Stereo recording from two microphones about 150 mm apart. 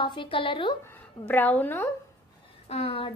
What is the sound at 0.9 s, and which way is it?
A woman's voice, 10° left (ahead or behind).